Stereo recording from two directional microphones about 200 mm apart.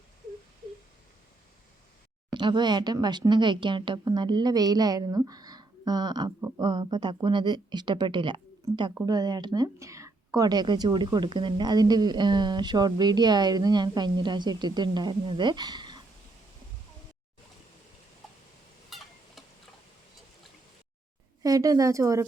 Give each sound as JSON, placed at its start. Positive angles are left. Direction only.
{"t": 2.3, "sound": "a woman's voice", "side_deg": -20}
{"t": 18.9, "sound": "a sound", "side_deg": 0}
{"t": 21.4, "sound": "a woman's voice", "side_deg": -15}